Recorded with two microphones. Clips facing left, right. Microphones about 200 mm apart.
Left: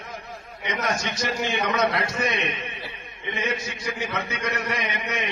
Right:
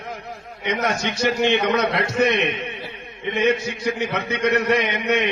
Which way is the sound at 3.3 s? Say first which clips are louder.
Right 9 dB; 65° right (ahead or behind).